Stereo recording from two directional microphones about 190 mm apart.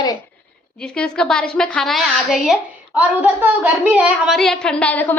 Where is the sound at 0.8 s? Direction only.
5° left (ahead or behind).